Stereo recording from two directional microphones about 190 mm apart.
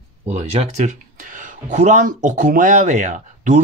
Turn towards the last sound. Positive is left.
turn(degrees=-40)  # may be behind; listen again after turning